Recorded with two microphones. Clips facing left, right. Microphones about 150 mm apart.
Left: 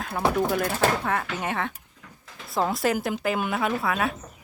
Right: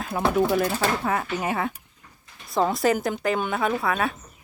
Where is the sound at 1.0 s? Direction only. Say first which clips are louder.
Right 2 dB; 5° right (ahead or behind).